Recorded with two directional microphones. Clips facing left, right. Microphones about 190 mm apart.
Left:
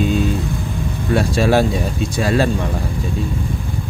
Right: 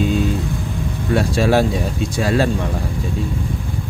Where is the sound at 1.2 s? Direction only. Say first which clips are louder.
Left 1 dB; 30° left (ahead or behind).